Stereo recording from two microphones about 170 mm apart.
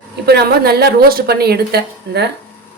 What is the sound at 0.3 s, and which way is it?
A woman's voice, 70° right (ahead or behind).